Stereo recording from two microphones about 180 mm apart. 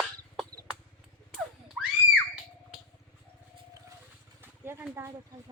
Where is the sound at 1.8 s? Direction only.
Centre (ahead or behind).